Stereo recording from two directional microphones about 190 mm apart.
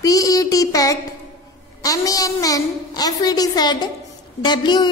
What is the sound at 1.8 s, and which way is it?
A woman's voice, 20° left (ahead or behind).